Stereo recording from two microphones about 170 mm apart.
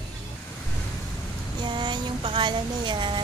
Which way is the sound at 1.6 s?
25° right (ahead or behind).